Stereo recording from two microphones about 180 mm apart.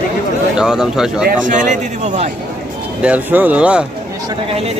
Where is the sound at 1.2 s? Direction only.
50° right (ahead or behind).